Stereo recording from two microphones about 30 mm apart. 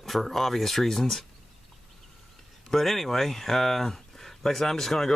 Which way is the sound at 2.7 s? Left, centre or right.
Centre.